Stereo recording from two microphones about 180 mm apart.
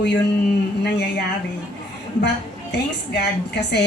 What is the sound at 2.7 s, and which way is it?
A woman's voice, 70° left (ahead or behind).